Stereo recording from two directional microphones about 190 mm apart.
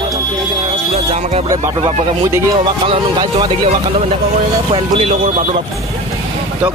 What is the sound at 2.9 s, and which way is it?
Speech, 25° right (ahead or behind).